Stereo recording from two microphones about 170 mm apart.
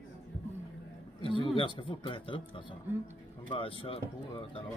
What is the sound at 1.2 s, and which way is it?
A man's voice, 30° left (ahead or behind).